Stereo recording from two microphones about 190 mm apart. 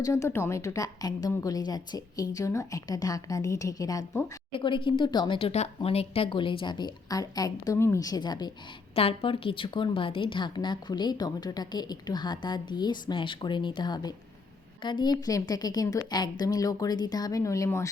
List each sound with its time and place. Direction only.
0.0 s a woman's voice: 15° left (ahead or behind)
4.5 s a woman's voice: 25° left (ahead or behind)